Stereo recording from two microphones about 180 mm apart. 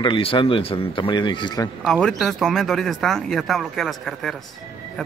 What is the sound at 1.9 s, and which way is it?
Speech, 5° left (ahead or behind).